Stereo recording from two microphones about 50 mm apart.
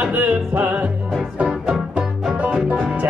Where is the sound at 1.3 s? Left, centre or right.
Centre.